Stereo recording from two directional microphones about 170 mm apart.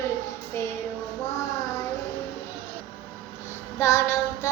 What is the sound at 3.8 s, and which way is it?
Child singing, 15° left (ahead or behind).